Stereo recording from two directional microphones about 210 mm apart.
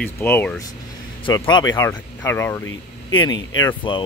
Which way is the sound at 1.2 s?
20° left (ahead or behind).